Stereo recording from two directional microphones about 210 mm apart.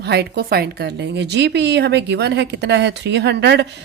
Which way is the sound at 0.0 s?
50° right (ahead or behind).